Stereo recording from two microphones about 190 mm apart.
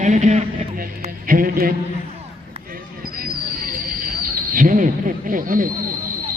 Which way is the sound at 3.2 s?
50° right (ahead or behind).